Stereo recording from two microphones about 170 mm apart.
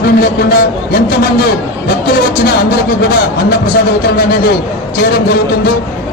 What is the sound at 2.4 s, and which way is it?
Speech, 65° left (ahead or behind).